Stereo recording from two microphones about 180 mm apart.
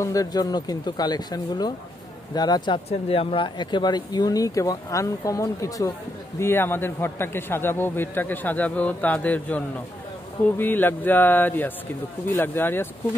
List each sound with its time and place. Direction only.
0.0 s a man's voice: 20° left (ahead or behind)
10.6 s a man's voice: 10° left (ahead or behind)